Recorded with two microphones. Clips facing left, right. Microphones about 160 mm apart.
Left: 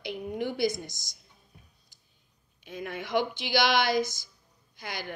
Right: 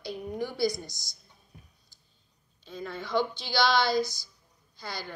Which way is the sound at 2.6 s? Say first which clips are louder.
Left 1 dB; 15° left (ahead or behind).